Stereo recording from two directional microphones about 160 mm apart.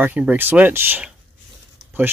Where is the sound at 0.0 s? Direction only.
10° right (ahead or behind).